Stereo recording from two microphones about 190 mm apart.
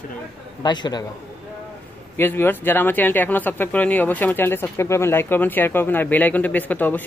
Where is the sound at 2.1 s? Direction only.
10° left (ahead or behind).